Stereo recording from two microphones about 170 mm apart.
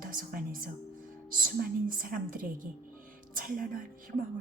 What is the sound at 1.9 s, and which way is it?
A woman's voice, 55° right (ahead or behind).